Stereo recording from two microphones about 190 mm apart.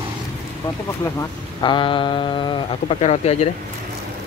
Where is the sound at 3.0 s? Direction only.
35° left (ahead or behind).